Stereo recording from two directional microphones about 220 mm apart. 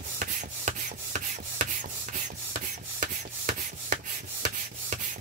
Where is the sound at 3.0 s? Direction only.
35° right (ahead or behind).